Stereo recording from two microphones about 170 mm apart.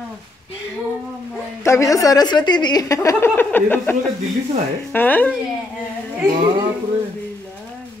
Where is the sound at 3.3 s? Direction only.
10° left (ahead or behind).